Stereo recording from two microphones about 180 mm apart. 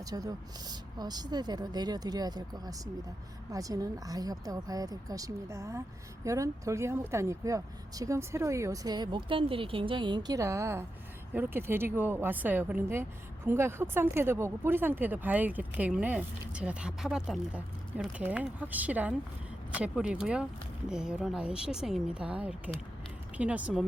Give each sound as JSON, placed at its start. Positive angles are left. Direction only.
{"t": 0.0, "sound": "a woman's voice", "side_deg": -20}